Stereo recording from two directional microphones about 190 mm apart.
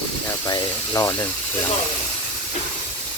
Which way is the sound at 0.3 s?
20° left (ahead or behind).